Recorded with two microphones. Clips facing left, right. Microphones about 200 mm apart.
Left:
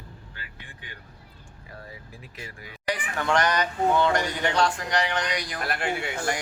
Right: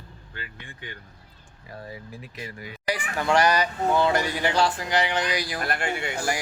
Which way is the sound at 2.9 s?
10° right (ahead or behind).